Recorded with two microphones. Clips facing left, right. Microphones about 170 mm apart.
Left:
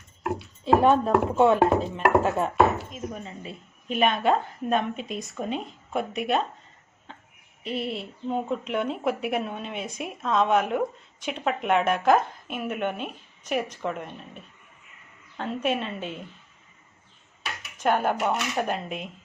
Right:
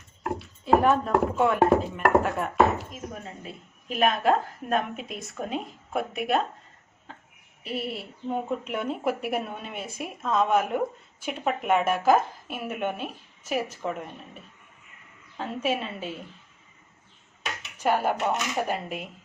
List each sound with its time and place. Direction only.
0.6 s speech: 30° left (ahead or behind)
2.9 s a woman's voice: centre (ahead or behind)
7.1 s a sound: 5° right (ahead or behind)
7.6 s a woman's voice: 5° right (ahead or behind)
15.4 s a woman's voice: 5° right (ahead or behind)
17.8 s a woman's voice: 5° right (ahead or behind)